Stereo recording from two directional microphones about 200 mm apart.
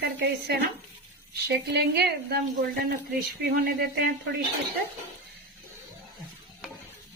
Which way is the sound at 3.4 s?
50° right (ahead or behind).